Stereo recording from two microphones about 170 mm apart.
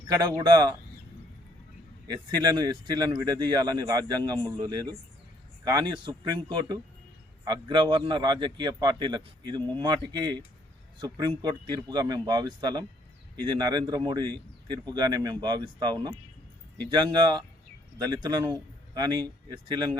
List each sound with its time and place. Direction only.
0.1 s a man's voice: 25° right (ahead or behind)
2.0 s a man's voice: 25° right (ahead or behind)